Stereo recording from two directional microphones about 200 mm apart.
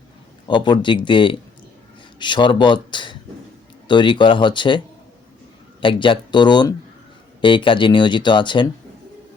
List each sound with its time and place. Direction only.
0.4 s speech: 25° left (ahead or behind)
5.8 s speech: 25° left (ahead or behind)